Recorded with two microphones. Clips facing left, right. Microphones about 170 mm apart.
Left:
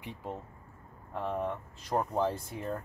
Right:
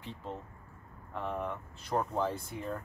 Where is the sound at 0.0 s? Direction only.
10° left (ahead or behind).